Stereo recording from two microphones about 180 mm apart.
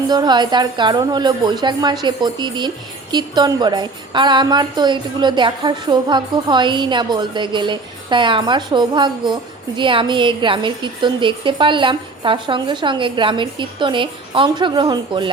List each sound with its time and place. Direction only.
0.1 s a woman's voice: 25° right (ahead or behind)